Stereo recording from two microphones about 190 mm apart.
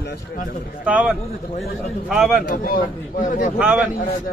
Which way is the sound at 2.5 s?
50° left (ahead or behind).